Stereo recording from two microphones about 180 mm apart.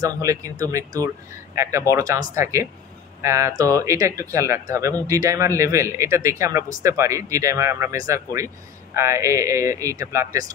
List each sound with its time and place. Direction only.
0.0 s speech: 20° right (ahead or behind)